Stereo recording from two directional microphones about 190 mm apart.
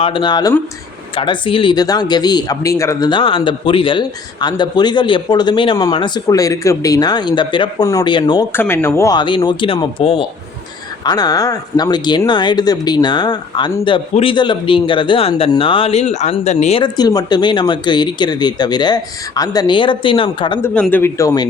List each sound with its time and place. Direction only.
0.0 s speech: 25° left (ahead or behind)
16.8 s speech: 20° left (ahead or behind)
20.6 s a man's voice: 10° left (ahead or behind)